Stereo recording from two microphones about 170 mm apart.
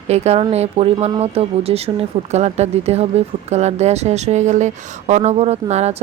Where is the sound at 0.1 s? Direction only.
40° right (ahead or behind).